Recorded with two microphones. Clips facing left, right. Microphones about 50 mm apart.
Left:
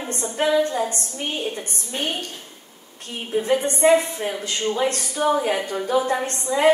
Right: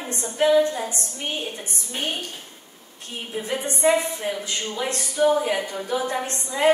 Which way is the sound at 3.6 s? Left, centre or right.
Left.